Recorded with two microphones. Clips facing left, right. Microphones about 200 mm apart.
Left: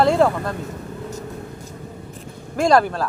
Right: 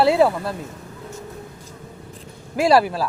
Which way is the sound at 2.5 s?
5° right (ahead or behind).